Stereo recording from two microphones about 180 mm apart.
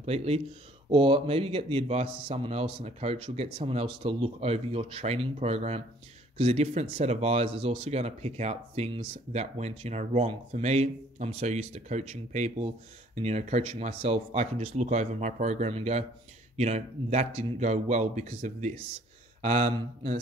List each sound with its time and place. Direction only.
0.0 s speech: 35° right (ahead or behind)